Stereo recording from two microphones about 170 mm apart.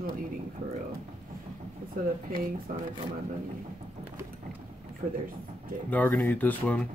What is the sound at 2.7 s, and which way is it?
Speech, 55° right (ahead or behind).